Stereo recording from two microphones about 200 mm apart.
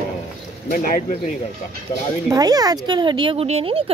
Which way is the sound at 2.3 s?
20° right (ahead or behind).